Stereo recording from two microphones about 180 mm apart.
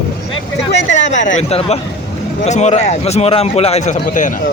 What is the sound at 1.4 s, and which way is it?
A man's voice, 35° left (ahead or behind).